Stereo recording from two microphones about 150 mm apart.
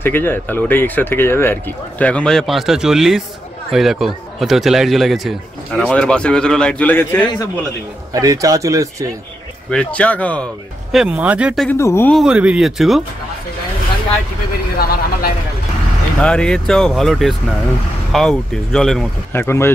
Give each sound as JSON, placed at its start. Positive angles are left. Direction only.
{"t": 0.0, "sound": "a man's voice", "side_deg": 15}
{"t": 8.1, "sound": "speech", "side_deg": -25}
{"t": 9.7, "sound": "speech", "side_deg": 5}
{"t": 10.9, "sound": "speech", "side_deg": -5}
{"t": 11.7, "sound": "speech", "side_deg": 15}
{"t": 12.1, "sound": "a man's voice", "side_deg": -5}
{"t": 16.2, "sound": "a man's voice", "side_deg": 5}
{"t": 19.3, "sound": "speech", "side_deg": 15}